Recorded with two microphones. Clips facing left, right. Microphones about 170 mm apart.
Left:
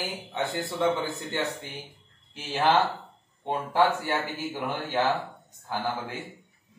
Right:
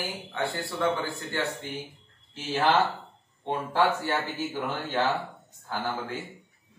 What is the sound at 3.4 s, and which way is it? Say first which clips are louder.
A man's voice: left 1 dB; 15° left (ahead or behind).